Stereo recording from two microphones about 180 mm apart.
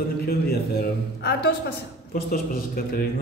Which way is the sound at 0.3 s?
60° left (ahead or behind).